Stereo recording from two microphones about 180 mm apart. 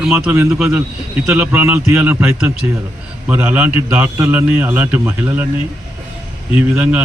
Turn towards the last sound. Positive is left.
turn(degrees=-10)  # may be behind; listen again after turning